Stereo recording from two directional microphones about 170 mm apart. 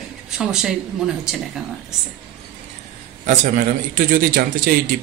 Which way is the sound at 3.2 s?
45° right (ahead or behind).